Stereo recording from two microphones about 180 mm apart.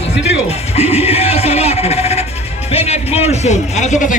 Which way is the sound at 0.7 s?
35° left (ahead or behind).